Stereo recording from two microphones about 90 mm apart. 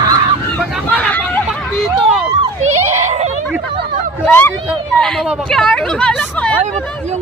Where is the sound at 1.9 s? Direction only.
5° right (ahead or behind).